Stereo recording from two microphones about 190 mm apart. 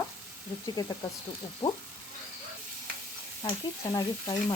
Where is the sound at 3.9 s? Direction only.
20° left (ahead or behind).